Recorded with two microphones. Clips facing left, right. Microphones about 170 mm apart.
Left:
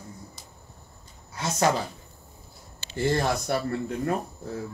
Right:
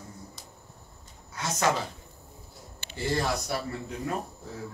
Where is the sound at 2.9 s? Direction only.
50° left (ahead or behind).